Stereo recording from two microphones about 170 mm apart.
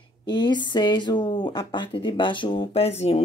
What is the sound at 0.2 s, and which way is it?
Speech, 25° left (ahead or behind).